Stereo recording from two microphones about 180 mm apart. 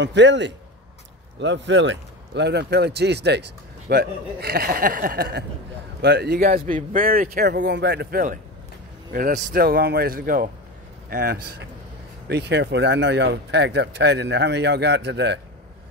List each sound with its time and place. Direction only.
0.0 s speech: 80° right
1.4 s speech: 90° right; by 15.4 s 70° right (ahead or behind)